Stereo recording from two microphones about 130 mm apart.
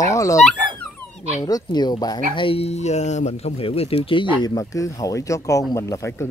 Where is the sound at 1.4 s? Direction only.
30° left (ahead or behind).